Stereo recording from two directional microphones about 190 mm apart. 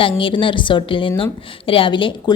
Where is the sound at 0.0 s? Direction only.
25° left (ahead or behind).